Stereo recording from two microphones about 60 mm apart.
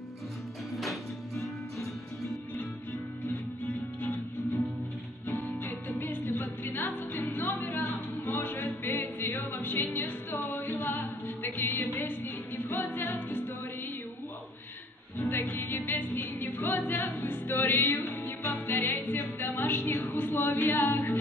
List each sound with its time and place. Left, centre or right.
0.7 s music: centre
3.3 s music: left
15.1 s music: left